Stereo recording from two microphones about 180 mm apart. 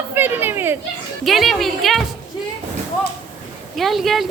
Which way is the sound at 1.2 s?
Centre (ahead or behind).